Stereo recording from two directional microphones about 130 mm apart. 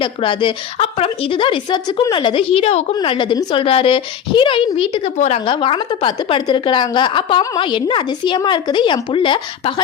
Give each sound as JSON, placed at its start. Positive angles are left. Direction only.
{"t": 0.0, "sound": "a woman's voice", "side_deg": 40}
{"t": 5.1, "sound": "speech", "side_deg": 60}
{"t": 5.5, "sound": "a woman's voice", "side_deg": 45}